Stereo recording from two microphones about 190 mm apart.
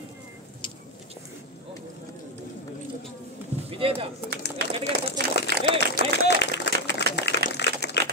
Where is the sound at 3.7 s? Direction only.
30° right (ahead or behind).